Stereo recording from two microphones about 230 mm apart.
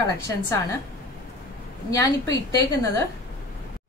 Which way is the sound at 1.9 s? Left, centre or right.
Centre.